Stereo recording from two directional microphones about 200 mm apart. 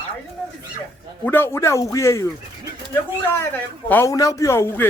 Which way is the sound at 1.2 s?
10° left (ahead or behind).